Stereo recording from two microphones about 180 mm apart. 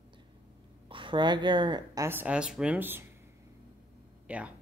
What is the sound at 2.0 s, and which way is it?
Speech, 10° right (ahead or behind).